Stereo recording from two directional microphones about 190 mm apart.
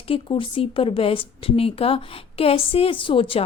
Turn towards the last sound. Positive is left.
turn(degrees=30)  # may be behind; listen again after turning